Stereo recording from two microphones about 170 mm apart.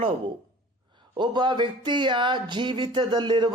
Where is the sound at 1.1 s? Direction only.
25° right (ahead or behind).